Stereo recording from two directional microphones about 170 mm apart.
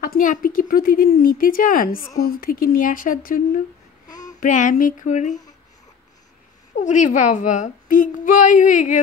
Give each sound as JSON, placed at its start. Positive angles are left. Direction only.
{"t": 0.0, "sound": "a woman's voice", "side_deg": 55}
{"t": 6.8, "sound": "a woman's voice", "side_deg": 50}